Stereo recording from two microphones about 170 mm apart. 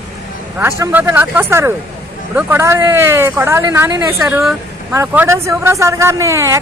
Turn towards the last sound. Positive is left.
turn(degrees=-20)  # may be behind; listen again after turning